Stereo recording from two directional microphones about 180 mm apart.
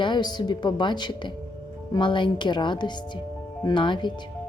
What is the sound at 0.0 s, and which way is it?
A woman's voice, 25° left (ahead or behind).